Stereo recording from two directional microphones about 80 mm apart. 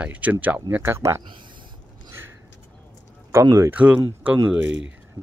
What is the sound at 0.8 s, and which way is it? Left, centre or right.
Speech, right.